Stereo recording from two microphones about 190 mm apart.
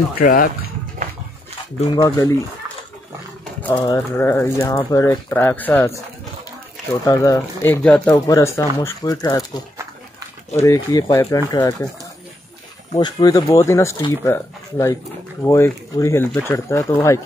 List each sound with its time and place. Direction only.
0.2 s speech: 50° left (ahead or behind)
1.9 s speech: 20° left (ahead or behind)
3.7 s speech: 20° left (ahead or behind)
7.1 s speech: 15° left (ahead or behind)
12.9 s speech: 20° left (ahead or behind)